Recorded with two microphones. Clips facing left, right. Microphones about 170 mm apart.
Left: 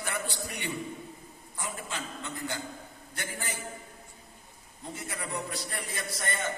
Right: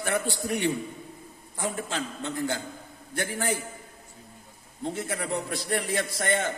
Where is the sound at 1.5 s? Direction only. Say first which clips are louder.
Right 7 dB; 75° right (ahead or behind).